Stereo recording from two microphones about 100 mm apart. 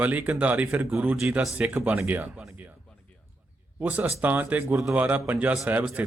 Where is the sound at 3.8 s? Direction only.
15° right (ahead or behind).